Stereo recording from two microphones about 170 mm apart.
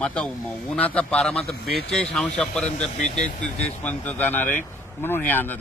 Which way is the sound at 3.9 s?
10° left (ahead or behind).